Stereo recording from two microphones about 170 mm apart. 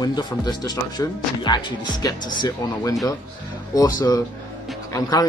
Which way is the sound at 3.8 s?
20° left (ahead or behind).